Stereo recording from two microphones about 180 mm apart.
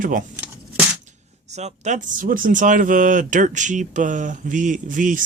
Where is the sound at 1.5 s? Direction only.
40° right (ahead or behind).